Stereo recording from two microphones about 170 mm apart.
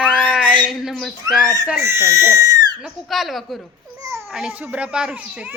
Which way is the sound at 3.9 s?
20° right (ahead or behind).